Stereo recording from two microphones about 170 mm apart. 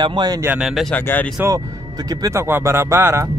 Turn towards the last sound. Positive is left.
turn(degrees=-15)  # may be behind; listen again after turning